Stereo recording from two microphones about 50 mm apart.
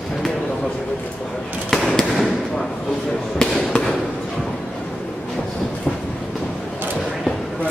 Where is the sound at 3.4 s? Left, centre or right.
Centre.